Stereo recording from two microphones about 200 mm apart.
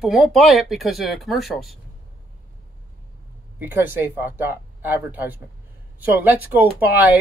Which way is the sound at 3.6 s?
10° right (ahead or behind).